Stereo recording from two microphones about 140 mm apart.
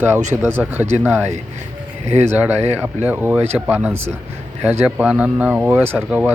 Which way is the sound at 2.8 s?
15° right (ahead or behind).